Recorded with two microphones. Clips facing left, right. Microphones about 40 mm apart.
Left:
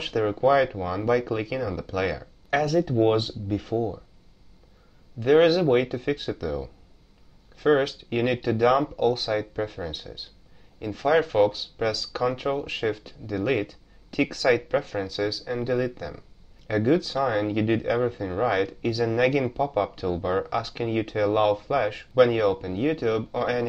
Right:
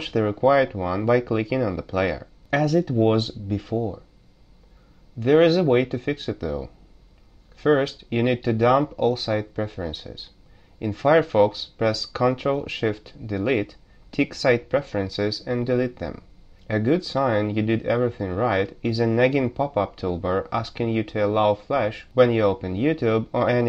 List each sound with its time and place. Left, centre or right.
0.0 s speech: centre
5.2 s speech: centre
11.0 s speech: centre